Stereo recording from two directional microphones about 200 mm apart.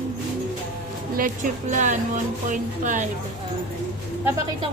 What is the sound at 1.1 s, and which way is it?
A woman's voice, 40° right (ahead or behind).